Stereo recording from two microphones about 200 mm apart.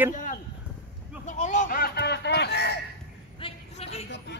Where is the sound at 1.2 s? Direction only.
40° left (ahead or behind); by 2.8 s 55° left (ahead or behind).